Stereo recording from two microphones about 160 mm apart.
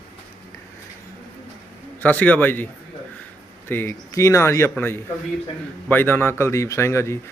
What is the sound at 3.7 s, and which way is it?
A man's voice, 15° left (ahead or behind).